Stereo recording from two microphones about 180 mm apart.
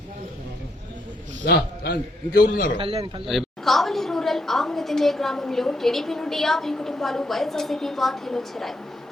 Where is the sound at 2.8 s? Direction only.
30° right (ahead or behind).